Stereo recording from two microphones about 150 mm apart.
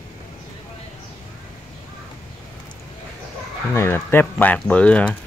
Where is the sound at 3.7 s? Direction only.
15° left (ahead or behind).